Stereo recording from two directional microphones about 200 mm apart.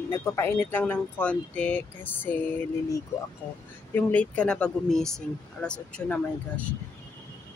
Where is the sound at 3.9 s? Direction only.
10° left (ahead or behind).